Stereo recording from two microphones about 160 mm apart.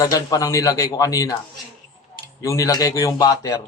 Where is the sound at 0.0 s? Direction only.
20° left (ahead or behind).